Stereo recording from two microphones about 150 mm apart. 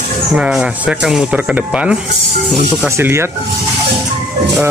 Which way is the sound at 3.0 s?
15° right (ahead or behind).